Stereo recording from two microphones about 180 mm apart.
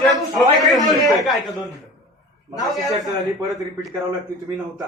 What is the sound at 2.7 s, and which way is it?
Speech, centre (ahead or behind).